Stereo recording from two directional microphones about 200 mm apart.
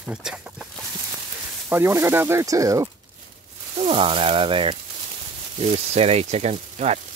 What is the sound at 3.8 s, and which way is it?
Speech, 30° right (ahead or behind).